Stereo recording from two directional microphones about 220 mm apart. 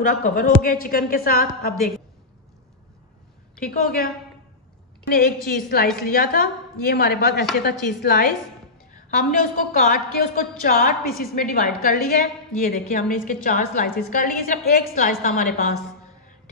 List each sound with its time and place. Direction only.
0.0 s a woman's voice: 40° left (ahead or behind)
3.5 s a woman's voice: 40° left (ahead or behind)